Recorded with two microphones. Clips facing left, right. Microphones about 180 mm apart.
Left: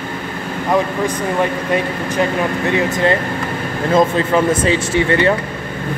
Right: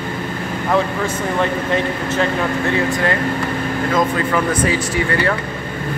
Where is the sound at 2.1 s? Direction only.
20° left (ahead or behind).